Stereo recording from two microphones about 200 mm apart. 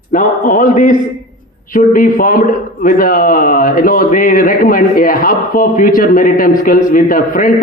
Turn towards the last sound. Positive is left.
turn(degrees=45)  # may be behind; listen again after turning